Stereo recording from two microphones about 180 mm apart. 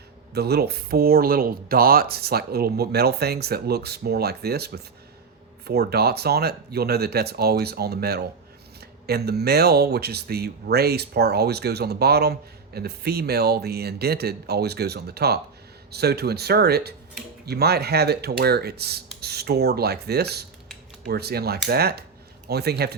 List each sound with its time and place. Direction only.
0.3 s speech: 65° right (ahead or behind)